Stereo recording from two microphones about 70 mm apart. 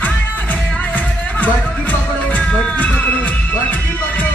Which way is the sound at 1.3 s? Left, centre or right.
Left.